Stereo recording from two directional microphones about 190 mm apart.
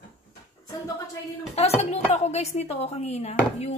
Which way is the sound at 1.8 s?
35° left (ahead or behind).